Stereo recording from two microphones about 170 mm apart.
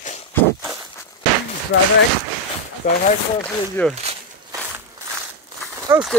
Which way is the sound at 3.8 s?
10° left (ahead or behind).